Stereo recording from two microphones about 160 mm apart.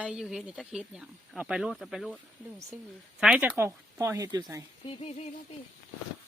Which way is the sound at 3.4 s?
15° right (ahead or behind).